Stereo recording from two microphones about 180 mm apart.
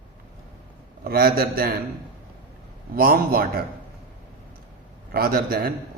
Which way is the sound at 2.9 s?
55° right (ahead or behind).